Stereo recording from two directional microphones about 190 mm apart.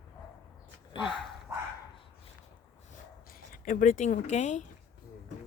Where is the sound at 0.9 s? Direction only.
25° left (ahead or behind).